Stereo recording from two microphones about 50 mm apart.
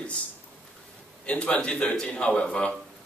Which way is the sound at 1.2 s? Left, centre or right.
Left.